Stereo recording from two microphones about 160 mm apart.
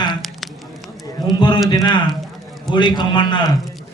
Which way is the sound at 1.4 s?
30° left (ahead or behind).